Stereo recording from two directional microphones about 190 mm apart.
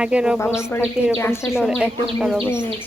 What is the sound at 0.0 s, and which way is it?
Speech, 5° right (ahead or behind).